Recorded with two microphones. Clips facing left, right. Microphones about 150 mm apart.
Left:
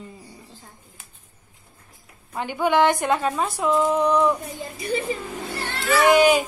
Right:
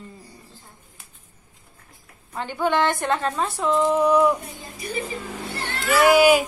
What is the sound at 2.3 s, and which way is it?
A woman's voice, 15° left (ahead or behind).